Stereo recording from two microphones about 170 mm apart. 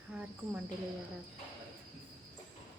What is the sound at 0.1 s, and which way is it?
Cricket, 5° right (ahead or behind).